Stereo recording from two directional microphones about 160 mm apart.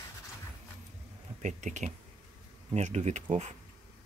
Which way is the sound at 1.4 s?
50° right (ahead or behind).